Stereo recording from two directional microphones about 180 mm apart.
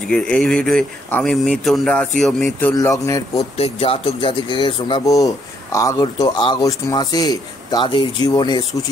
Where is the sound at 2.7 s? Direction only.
20° left (ahead or behind).